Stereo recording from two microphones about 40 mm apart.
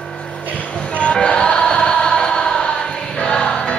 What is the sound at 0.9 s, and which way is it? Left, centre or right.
Music, left.